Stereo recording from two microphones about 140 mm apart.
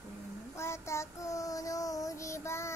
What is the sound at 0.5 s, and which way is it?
Child singing, 20° left (ahead or behind).